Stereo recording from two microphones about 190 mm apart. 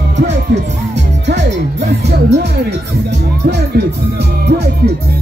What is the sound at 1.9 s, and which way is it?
Speech, 60° right (ahead or behind).